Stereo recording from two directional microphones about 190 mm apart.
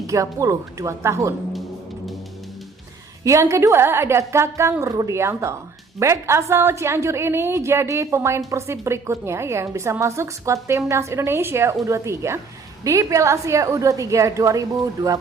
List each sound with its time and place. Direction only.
0.1 s a woman's voice: 15° right (ahead or behind)
3.2 s a woman's voice: 15° right (ahead or behind)